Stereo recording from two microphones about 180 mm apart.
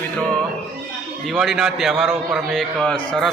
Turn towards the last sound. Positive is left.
turn(degrees=5)  # may be behind; listen again after turning